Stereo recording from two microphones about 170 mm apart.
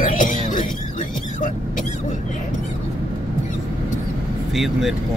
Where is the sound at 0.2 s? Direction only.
50° left (ahead or behind).